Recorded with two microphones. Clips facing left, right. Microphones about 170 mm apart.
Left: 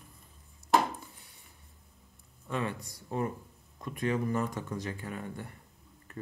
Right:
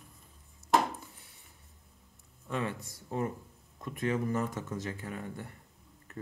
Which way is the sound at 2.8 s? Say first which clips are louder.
Even; centre (ahead or behind).